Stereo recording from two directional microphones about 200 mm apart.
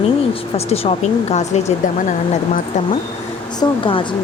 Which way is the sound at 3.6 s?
25° left (ahead or behind).